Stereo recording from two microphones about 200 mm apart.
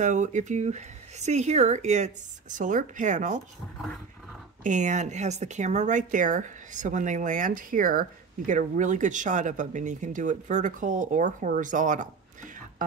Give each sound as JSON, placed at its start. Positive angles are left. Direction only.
{"t": 0.0, "sound": "speech", "side_deg": -35}
{"t": 4.6, "sound": "speech", "side_deg": -35}